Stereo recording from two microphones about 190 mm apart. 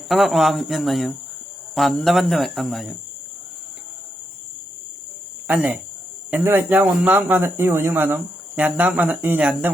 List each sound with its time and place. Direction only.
0.1 s speech: centre (ahead or behind)
5.5 s speech: 5° right (ahead or behind)